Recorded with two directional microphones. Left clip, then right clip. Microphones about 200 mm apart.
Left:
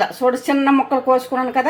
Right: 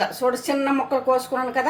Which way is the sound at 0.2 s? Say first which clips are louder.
Left 5 dB; 35° left (ahead or behind).